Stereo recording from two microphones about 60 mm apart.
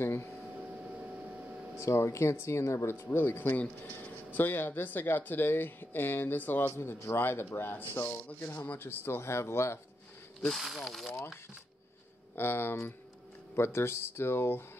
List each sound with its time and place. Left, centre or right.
0.0 s speech: left
1.8 s speech: left
6.8 s speech: left
10.5 s speech: centre
12.4 s speech: left